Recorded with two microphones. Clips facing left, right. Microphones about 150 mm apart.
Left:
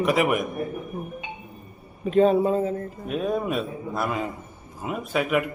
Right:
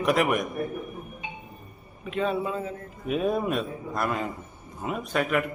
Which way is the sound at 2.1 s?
40° left (ahead or behind).